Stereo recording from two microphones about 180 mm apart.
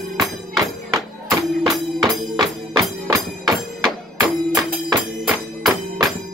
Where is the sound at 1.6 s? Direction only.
Centre (ahead or behind).